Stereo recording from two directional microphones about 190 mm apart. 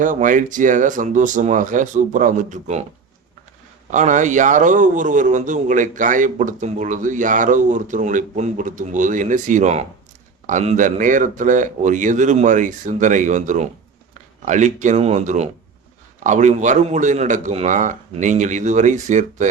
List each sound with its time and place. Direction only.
0.0 s speech: 45° right (ahead or behind)
3.9 s a man's voice: 40° right (ahead or behind)